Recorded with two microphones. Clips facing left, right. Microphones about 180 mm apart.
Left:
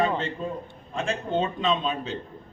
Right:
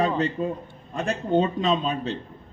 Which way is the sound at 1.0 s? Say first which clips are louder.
Right 4 dB; 40° right (ahead or behind).